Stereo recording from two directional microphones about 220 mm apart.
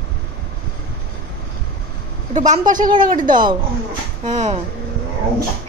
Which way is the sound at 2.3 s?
35° right (ahead or behind).